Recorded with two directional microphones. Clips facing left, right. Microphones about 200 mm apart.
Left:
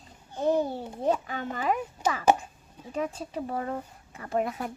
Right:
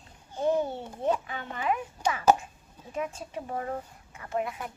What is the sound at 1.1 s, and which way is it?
Speech, 40° left (ahead or behind).